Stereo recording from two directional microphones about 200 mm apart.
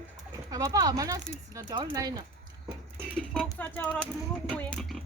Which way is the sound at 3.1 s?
5° right (ahead or behind).